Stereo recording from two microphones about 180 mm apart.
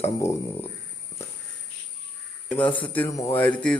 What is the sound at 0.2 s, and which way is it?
Speech, 15° left (ahead or behind).